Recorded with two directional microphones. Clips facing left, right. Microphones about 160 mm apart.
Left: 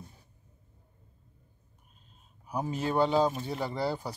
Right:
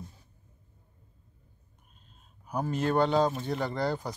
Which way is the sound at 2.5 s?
10° left (ahead or behind).